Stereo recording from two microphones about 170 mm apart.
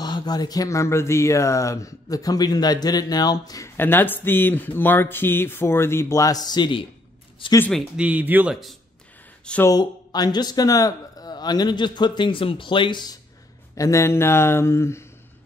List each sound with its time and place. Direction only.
0.0 s speech: 25° left (ahead or behind)
7.7 s speech: 5° right (ahead or behind)
9.7 s speech: 20° left (ahead or behind)